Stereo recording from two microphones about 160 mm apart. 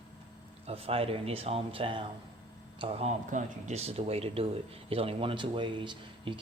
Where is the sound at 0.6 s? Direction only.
35° right (ahead or behind).